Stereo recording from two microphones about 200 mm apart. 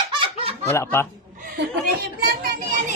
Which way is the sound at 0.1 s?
30° right (ahead or behind).